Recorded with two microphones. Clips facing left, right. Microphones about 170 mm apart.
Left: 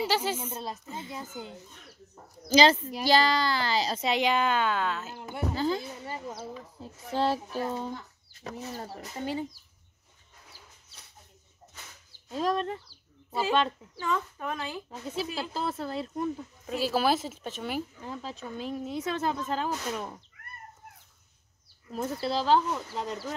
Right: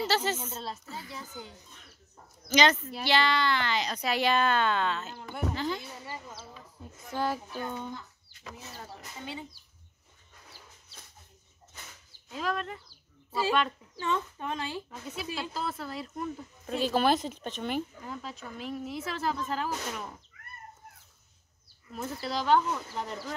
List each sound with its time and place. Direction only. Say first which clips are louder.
0.0 s speech: left 1 dB; 10° left (ahead or behind)
2.4 s speech: left 4 dB; 30° left (ahead or behind); by 5.2 s 5° left (ahead or behind)
5.5 s speech: left 6 dB; 35° left (ahead or behind)
6.0 s speech: left 6 dB; 25° left (ahead or behind); by 9.5 s 40° left (ahead or behind)
12.3 s speech: left 5 dB; 35° left (ahead or behind)
14.0 s speech: left 1 dB; 25° right (ahead or behind)
14.9 s speech: left 4 dB; 35° left (ahead or behind)
16.6 s speech: even; 5° left (ahead or behind)
18.0 s speech: left 2 dB; 25° left (ahead or behind)
21.9 s speech: left 4 dB; 30° left (ahead or behind)
22.9 s speech: left 2 dB; 20° left (ahead or behind)